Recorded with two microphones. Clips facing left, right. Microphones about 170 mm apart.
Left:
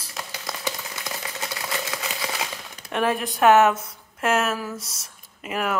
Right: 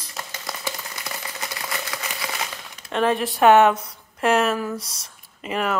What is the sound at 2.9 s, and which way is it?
Speech, 10° left (ahead or behind).